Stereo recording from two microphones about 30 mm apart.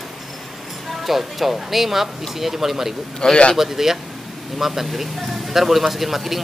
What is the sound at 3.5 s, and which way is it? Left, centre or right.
Speech, centre.